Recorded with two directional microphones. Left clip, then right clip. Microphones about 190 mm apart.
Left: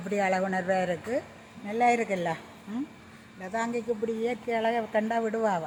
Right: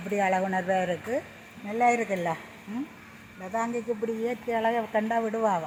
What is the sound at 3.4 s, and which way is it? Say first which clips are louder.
A woman's voice: right 1 dB; 5° right (ahead or behind).